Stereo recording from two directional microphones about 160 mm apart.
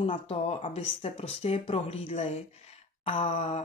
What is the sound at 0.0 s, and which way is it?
Speech, 35° left (ahead or behind).